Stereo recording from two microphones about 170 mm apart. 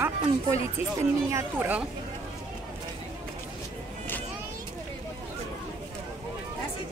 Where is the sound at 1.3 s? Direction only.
15° right (ahead or behind).